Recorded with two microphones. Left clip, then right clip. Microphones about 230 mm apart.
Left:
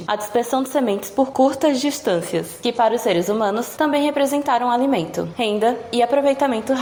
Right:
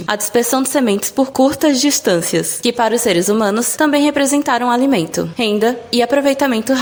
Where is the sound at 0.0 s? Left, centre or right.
Right.